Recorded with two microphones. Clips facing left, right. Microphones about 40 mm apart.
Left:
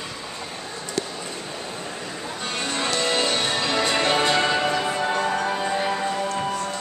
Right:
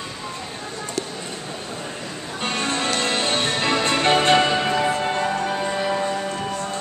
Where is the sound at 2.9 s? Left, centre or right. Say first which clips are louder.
Left 2 dB; right.